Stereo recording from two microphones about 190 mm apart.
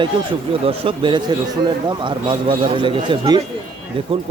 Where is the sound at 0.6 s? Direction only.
25° right (ahead or behind).